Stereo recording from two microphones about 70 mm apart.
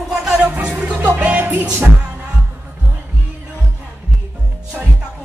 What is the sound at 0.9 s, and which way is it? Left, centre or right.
Music, right.